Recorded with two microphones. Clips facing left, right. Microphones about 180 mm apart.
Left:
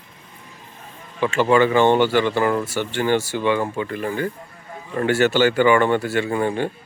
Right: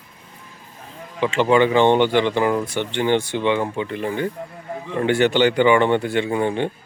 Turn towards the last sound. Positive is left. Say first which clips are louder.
# right 1 dB
turn(degrees=-20)  # may be behind; listen again after turning